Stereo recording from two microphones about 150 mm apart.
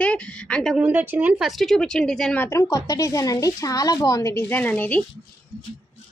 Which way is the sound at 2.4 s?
20° left (ahead or behind).